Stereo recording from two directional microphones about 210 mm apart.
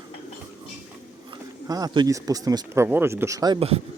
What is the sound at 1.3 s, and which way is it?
Speech, 15° right (ahead or behind).